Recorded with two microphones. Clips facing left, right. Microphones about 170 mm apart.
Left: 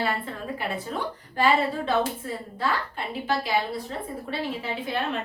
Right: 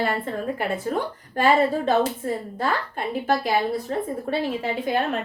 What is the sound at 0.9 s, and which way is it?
A woman's voice, 50° right (ahead or behind).